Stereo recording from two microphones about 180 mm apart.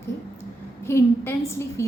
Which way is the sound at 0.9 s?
15° left (ahead or behind).